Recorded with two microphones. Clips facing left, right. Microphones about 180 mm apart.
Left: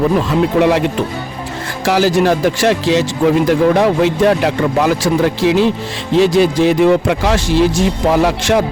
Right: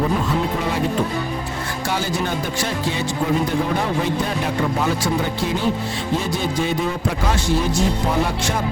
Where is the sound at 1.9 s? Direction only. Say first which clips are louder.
Left 12 dB; 90° left.